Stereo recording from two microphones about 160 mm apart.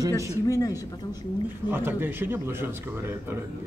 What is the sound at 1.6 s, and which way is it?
A man's voice, 15° right (ahead or behind).